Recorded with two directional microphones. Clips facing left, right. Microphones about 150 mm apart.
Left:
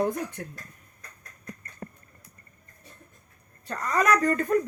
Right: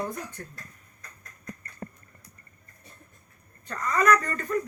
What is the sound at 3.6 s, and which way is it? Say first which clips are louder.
Speech: right 1 dB; 40° left (ahead or behind).